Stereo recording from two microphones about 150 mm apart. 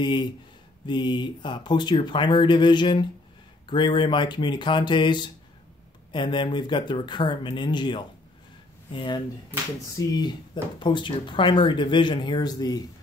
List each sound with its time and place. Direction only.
0.0 s speech: 30° left (ahead or behind)